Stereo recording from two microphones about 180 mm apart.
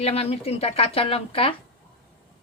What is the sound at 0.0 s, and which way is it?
A woman's voice, 35° left (ahead or behind).